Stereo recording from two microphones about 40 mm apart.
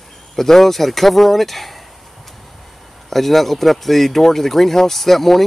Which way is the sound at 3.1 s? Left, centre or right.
Centre.